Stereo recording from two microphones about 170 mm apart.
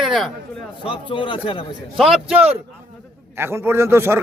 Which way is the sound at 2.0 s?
Centre (ahead or behind).